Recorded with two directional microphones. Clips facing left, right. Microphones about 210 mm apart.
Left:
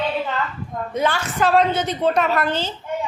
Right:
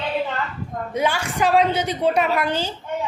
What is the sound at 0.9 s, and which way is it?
A woman's voice, 10° right (ahead or behind).